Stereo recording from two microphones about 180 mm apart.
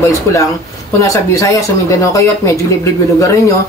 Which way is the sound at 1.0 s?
15° left (ahead or behind).